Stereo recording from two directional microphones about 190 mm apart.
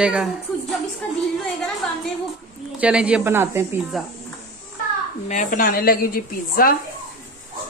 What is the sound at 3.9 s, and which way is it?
Speech, centre (ahead or behind).